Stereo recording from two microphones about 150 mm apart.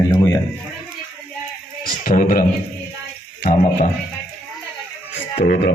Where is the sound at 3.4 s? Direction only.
60° left (ahead or behind).